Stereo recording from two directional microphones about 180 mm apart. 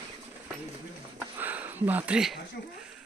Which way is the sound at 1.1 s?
10° right (ahead or behind).